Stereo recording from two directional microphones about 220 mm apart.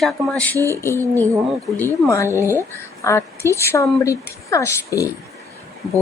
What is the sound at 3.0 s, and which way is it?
A woman's voice, 10° left (ahead or behind).